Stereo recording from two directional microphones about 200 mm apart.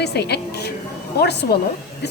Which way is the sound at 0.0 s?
55° left (ahead or behind).